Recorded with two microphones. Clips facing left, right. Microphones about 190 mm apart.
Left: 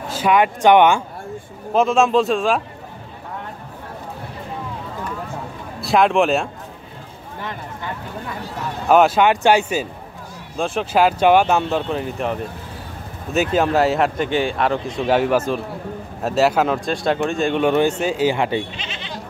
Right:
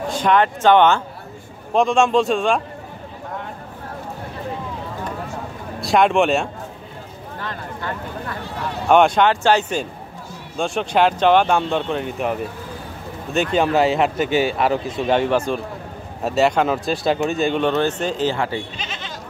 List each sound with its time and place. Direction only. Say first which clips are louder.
0.1 s speech: left 1 dB; 10° left (ahead or behind)
5.8 s speech: even; centre (ahead or behind)
7.3 s speech: even; 15° left (ahead or behind)
8.8 s speech: left 1 dB; 5° left (ahead or behind)
17.6 s speech: left 2 dB; 10° left (ahead or behind)
18.8 s goat: even; 45° right (ahead or behind)